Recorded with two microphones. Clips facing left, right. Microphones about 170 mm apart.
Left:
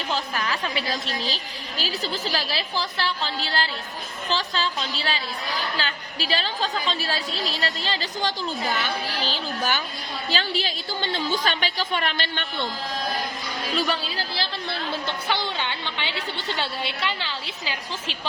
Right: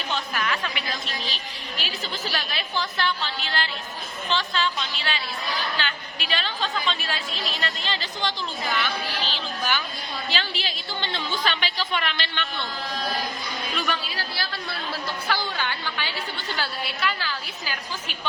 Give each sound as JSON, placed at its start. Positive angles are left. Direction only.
{"t": 0.1, "sound": "a woman's voice", "side_deg": 35}
{"t": 13.7, "sound": "a woman's voice", "side_deg": 30}